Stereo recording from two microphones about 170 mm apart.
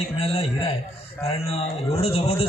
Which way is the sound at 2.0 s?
35° left (ahead or behind).